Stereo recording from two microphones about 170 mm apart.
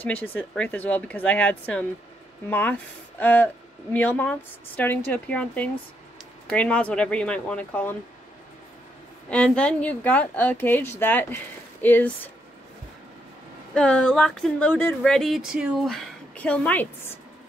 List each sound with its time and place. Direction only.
0.0 s a woman's voice: 10° left (ahead or behind)
9.3 s a woman's voice: 5° left (ahead or behind)
13.7 s speech: 5° left (ahead or behind)